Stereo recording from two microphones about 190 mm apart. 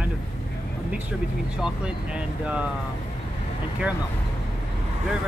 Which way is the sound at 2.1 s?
5° right (ahead or behind).